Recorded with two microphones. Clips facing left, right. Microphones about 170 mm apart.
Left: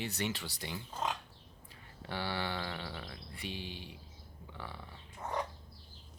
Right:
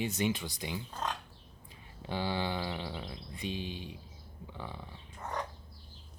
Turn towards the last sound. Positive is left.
turn(degrees=5)  # may be behind; listen again after turning